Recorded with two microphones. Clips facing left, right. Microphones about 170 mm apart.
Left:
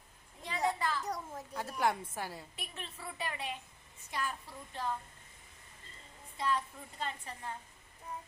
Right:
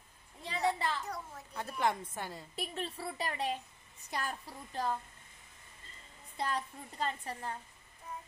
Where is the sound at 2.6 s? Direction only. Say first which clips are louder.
Right 7 dB; 35° right (ahead or behind).